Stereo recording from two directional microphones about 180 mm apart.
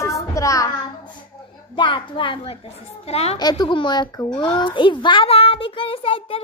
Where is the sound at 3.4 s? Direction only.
25° left (ahead or behind).